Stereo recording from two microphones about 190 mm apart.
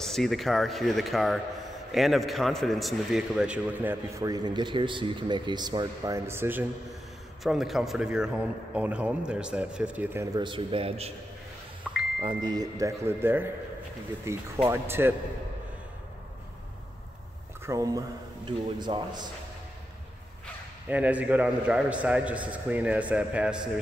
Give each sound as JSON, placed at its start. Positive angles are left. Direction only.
{"t": 0.0, "sound": "a man's voice", "side_deg": 0}
{"t": 7.4, "sound": "a man's voice", "side_deg": 0}
{"t": 10.3, "sound": "a man's voice", "side_deg": -25}
{"t": 11.8, "sound": "a sound", "side_deg": -5}
{"t": 12.2, "sound": "a man's voice", "side_deg": -20}
{"t": 17.6, "sound": "a man's voice", "side_deg": -20}
{"t": 20.9, "sound": "a man's voice", "side_deg": -10}